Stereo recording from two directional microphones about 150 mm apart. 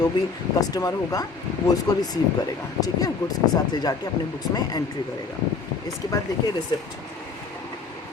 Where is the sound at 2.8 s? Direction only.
25° left (ahead or behind).